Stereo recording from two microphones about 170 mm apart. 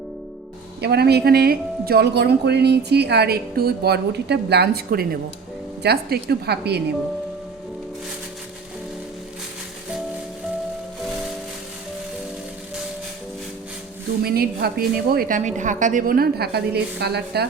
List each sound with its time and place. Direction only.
0.8 s speech: 75° right (ahead or behind)
14.2 s a woman's voice: 65° right (ahead or behind)